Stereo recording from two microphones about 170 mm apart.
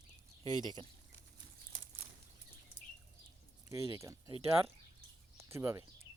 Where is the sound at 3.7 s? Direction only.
15° right (ahead or behind).